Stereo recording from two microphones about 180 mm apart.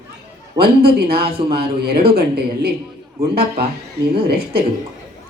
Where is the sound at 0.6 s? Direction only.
60° right (ahead or behind).